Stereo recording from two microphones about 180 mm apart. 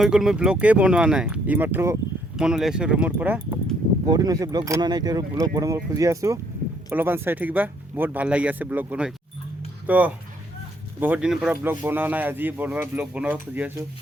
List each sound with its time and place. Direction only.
0.0 s speech: centre (ahead or behind)
4.0 s speech: 20° right (ahead or behind)